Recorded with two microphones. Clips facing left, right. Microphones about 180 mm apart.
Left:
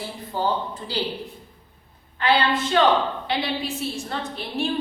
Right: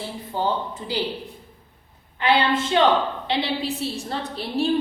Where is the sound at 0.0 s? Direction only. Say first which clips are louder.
Even; 20° right (ahead or behind).